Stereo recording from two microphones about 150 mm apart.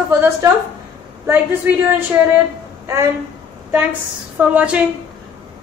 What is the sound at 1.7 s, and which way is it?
A woman's voice, 15° right (ahead or behind).